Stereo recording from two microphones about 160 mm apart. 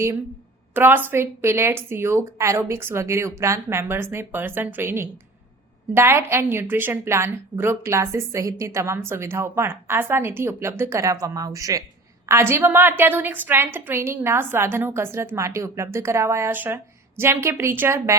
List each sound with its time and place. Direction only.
0.7 s a woman's voice: 10° right (ahead or behind)